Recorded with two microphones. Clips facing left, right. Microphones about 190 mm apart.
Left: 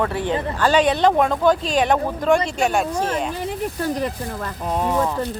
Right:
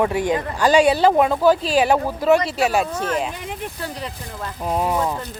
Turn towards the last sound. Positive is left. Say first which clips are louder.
# even
turn(degrees=-10)  # may be behind; listen again after turning